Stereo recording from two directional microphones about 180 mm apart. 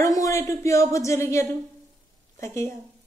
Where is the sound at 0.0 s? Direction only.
15° left (ahead or behind).